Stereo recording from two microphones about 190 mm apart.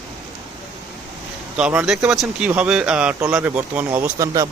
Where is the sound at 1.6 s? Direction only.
5° right (ahead or behind).